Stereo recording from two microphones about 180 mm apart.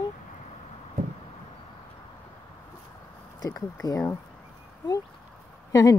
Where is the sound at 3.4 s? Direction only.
20° left (ahead or behind).